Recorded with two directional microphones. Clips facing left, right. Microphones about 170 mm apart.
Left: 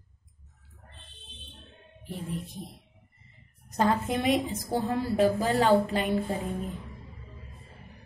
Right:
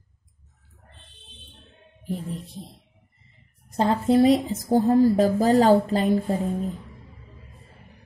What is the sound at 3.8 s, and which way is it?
A woman's voice, 30° right (ahead or behind).